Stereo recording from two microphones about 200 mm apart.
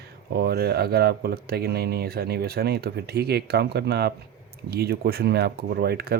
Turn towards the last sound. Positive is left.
turn(degrees=-50)  # may be behind; listen again after turning